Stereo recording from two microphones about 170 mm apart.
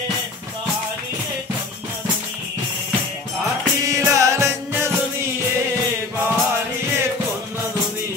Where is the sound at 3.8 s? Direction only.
20° right (ahead or behind).